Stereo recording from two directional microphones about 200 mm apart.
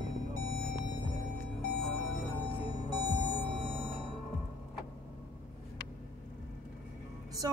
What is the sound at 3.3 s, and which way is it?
Sonar, 30° right (ahead or behind).